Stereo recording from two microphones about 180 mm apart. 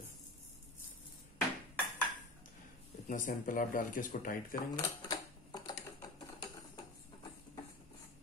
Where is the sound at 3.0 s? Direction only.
45° left (ahead or behind).